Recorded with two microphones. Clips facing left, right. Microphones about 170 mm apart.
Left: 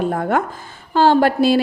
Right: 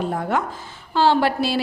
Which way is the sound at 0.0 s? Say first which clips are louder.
Left 4 dB; 55° left (ahead or behind).